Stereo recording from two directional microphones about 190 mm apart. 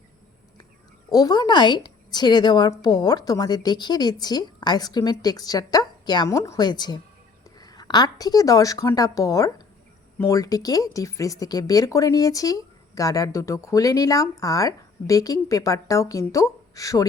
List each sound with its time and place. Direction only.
1.1 s a woman's voice: 20° left (ahead or behind)